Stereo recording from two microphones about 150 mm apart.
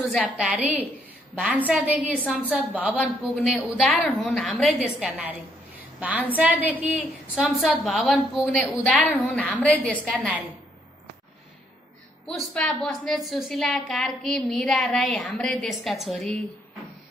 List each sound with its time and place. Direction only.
0.0 s a woman's voice: centre (ahead or behind)
3.5 s a woman's voice: 5° left (ahead or behind)
7.4 s a woman's voice: 5° left (ahead or behind)
12.5 s a woman's voice: 5° left (ahead or behind)